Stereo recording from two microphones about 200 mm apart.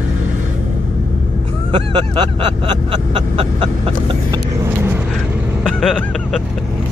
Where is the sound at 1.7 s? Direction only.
25° right (ahead or behind).